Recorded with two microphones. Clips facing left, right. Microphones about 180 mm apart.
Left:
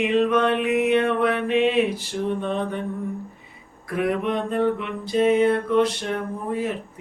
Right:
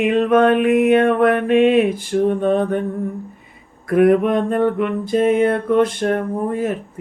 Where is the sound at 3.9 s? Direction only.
50° right (ahead or behind).